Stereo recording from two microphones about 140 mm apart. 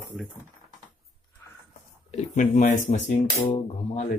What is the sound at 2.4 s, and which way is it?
Speech, 65° left (ahead or behind).